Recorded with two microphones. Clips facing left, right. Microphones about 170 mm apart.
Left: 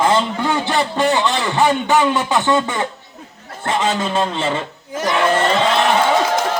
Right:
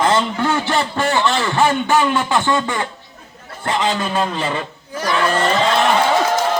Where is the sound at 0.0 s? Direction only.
15° left (ahead or behind).